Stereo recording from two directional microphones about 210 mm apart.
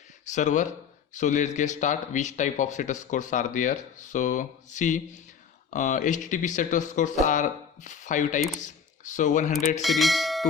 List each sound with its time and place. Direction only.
0.3 s speech: 35° left (ahead or behind)
9.8 s speech: centre (ahead or behind)